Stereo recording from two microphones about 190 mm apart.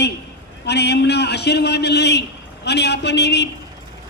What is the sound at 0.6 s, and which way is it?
A man's voice, 60° left (ahead or behind).